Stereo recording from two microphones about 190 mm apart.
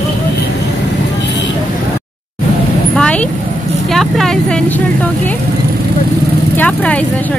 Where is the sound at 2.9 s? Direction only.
5° left (ahead or behind).